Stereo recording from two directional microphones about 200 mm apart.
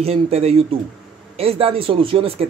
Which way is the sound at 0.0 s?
30° right (ahead or behind).